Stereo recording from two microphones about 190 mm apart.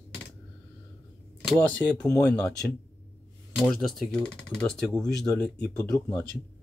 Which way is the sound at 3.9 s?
Centre (ahead or behind).